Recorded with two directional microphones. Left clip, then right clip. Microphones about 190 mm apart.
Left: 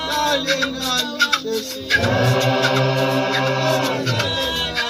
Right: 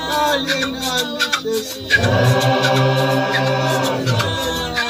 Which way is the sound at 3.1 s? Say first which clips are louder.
Right 2 dB; 20° left (ahead or behind).